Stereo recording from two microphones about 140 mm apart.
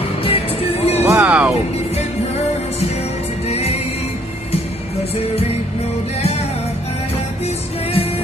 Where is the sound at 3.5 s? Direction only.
50° left (ahead or behind).